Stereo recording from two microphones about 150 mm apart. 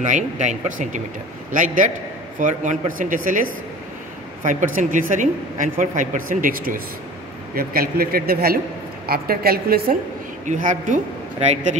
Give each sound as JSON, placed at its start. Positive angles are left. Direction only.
{"t": 0.0, "sound": "speech", "side_deg": -55}
{"t": 4.5, "sound": "speech", "side_deg": -60}
{"t": 7.5, "sound": "speech", "side_deg": -80}
{"t": 10.4, "sound": "speech", "side_deg": -60}